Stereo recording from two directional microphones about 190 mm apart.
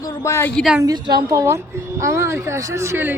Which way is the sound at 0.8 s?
20° right (ahead or behind).